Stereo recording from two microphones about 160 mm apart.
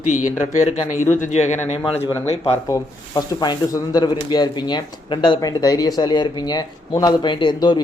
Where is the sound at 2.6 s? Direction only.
20° left (ahead or behind).